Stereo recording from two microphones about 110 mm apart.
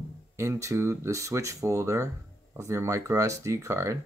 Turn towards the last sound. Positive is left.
turn(degrees=-25)  # may be behind; listen again after turning